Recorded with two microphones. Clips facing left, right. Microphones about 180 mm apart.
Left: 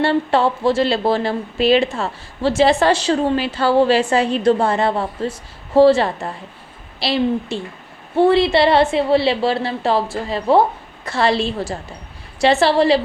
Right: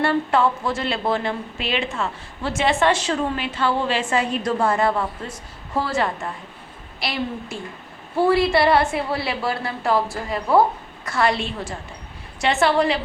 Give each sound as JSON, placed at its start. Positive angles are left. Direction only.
{"t": 0.0, "sound": "a woman's voice", "side_deg": 30}